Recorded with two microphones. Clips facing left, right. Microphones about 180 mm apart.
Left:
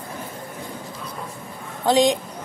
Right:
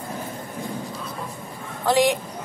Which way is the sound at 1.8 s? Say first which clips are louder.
Left 2 dB; 20° left (ahead or behind).